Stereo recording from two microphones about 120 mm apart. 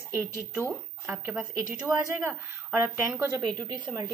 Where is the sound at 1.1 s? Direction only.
15° right (ahead or behind).